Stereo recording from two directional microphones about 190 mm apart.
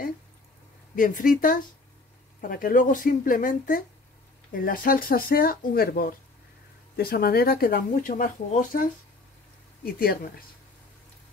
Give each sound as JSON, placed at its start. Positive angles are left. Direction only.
{"t": 0.9, "sound": "speech", "side_deg": 45}
{"t": 9.8, "sound": "speech", "side_deg": 50}